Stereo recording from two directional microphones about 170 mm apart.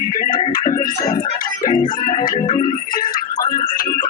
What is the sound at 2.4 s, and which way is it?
Organ, 35° left (ahead or behind).